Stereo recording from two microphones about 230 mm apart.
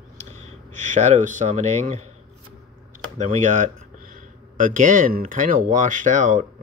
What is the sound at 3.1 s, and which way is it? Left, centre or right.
Speech, right.